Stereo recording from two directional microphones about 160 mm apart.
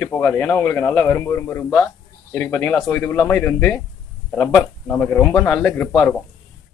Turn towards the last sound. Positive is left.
turn(degrees=0)  # may be behind; listen again after turning